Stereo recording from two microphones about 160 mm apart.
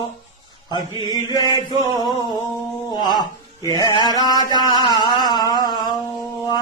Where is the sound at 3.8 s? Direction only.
25° left (ahead or behind).